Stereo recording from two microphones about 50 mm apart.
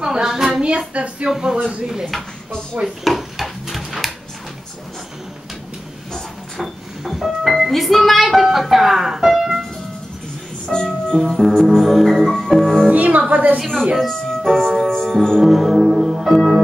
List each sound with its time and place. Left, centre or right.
0.0 s a sound: centre
0.6 s speech: right
3.0 s a sound: centre
6.6 s a sound: centre
7.4 s speech: centre
10.7 s music: centre
12.9 s a woman's voice: right
13.9 s music: centre
15.4 s music: centre